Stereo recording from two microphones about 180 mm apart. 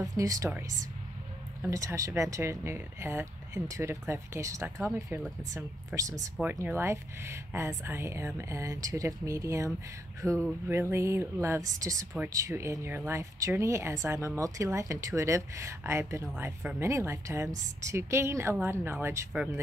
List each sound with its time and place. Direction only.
0.0 s speech: 20° right (ahead or behind)
1.6 s speech: 15° right (ahead or behind)